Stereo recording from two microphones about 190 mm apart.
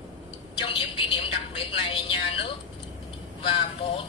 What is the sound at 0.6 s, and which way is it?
A woman's voice, 30° left (ahead or behind).